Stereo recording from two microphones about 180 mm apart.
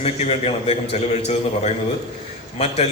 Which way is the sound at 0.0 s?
35° left (ahead or behind).